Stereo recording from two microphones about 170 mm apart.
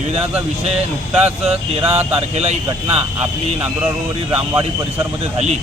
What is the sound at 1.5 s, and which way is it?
Speech, 35° right (ahead or behind).